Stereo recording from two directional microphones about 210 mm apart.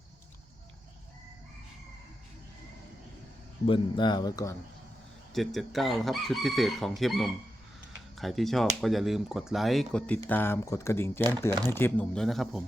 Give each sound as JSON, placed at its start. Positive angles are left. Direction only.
{"t": 3.7, "sound": "speech", "side_deg": 20}
{"t": 5.3, "sound": "chicken", "side_deg": 0}
{"t": 10.2, "sound": "speech", "side_deg": 10}
{"t": 11.7, "sound": "chicken", "side_deg": 10}